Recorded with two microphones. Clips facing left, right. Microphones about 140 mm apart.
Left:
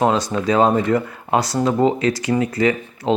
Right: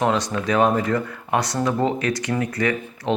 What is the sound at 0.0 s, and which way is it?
Speech, 25° left (ahead or behind).